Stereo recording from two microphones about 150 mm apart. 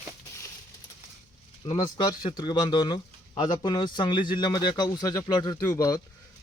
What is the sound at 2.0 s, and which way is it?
Speech, 30° left (ahead or behind).